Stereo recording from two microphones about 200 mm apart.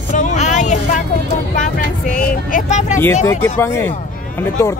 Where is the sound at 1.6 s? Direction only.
45° left (ahead or behind).